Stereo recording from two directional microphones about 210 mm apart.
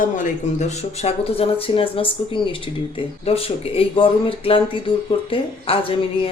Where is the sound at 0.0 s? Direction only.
40° left (ahead or behind).